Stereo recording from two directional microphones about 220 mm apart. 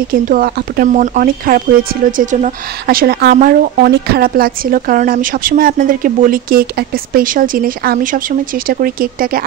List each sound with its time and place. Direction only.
0.1 s a woman's voice: 40° right (ahead or behind)